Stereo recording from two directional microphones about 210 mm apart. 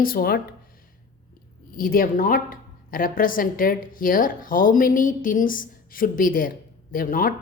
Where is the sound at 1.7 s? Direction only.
45° left (ahead or behind).